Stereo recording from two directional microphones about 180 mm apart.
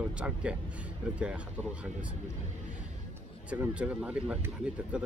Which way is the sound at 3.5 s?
5° right (ahead or behind).